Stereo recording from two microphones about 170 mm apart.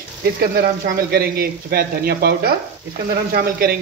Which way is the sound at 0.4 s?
70° right (ahead or behind).